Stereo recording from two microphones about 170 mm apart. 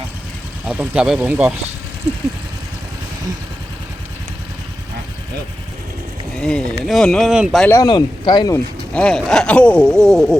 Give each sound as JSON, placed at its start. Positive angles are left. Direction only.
{"t": 0.7, "sound": "speech", "side_deg": -5}
{"t": 6.3, "sound": "speech", "side_deg": 5}
{"t": 7.6, "sound": "speech", "side_deg": 15}
{"t": 8.9, "sound": "speech", "side_deg": 5}